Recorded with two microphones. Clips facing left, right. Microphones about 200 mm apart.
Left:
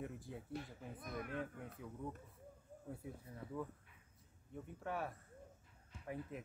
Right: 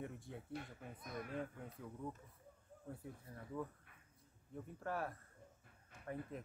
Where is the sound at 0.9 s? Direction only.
55° left (ahead or behind).